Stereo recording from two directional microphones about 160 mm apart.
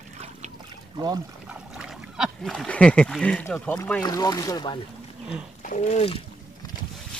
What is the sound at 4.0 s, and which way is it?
Speech, 25° left (ahead or behind).